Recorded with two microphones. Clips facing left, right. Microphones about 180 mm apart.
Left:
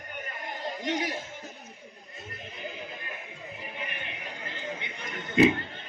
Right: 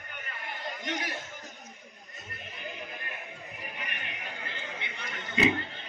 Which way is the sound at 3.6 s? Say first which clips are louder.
Left 3 dB; 25° left (ahead or behind).